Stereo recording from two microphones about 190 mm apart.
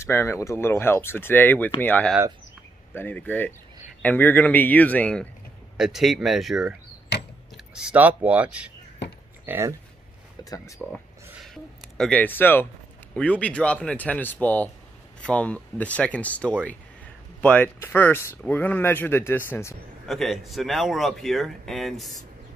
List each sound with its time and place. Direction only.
0.0 s speech: 15° left (ahead or behind)
7.1 s a sound: 60° left (ahead or behind)
7.5 s speech: 5° right (ahead or behind)
10.8 s a sound: 10° right (ahead or behind)
12.0 s speech: 5° left (ahead or behind)
20.1 s speech: centre (ahead or behind)